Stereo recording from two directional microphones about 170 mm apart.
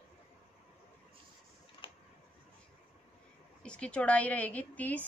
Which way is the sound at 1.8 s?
30° left (ahead or behind).